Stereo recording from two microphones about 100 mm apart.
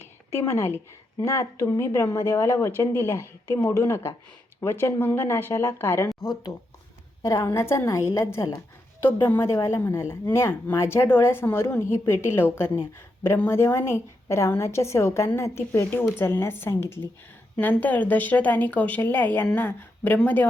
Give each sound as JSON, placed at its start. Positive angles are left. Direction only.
{"t": 0.3, "sound": "a woman's voice", "side_deg": 25}
{"t": 7.2, "sound": "a woman's voice", "side_deg": 30}